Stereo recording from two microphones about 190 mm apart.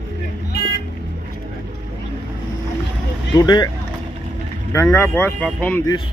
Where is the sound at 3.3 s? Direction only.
20° left (ahead or behind).